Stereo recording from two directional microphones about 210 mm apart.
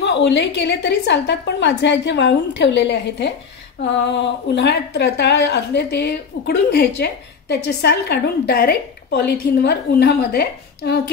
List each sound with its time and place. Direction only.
0.0 s a woman's voice: 55° left (ahead or behind)
4.6 s a woman's voice: 55° left (ahead or behind)